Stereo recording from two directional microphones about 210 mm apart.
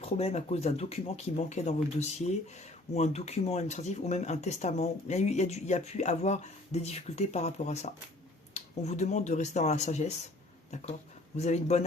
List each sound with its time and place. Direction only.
0.0 s speech: 30° left (ahead or behind)
11.3 s speech: 30° left (ahead or behind)